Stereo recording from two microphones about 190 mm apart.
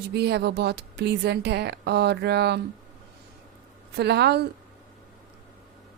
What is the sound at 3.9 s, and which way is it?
Speech, 60° right (ahead or behind).